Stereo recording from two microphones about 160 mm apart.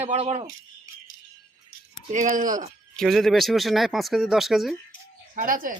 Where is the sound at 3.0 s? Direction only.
Centre (ahead or behind).